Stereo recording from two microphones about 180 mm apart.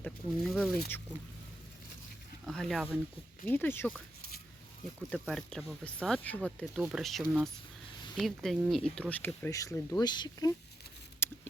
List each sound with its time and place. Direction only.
0.0 s speech: 5° left (ahead or behind)
2.5 s speech: centre (ahead or behind)
3.4 s speech: 10° left (ahead or behind)
11.2 s a sound: 15° left (ahead or behind)